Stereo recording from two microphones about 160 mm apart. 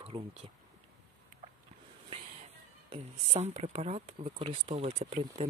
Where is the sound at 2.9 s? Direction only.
40° right (ahead or behind).